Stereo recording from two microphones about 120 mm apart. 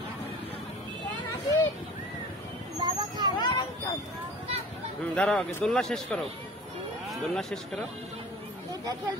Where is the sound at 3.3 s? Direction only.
40° left (ahead or behind).